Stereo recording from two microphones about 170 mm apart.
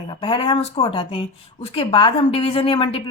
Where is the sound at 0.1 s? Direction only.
30° left (ahead or behind).